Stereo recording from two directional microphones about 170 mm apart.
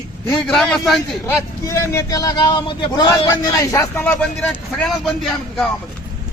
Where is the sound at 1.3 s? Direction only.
15° left (ahead or behind); by 5.6 s centre (ahead or behind).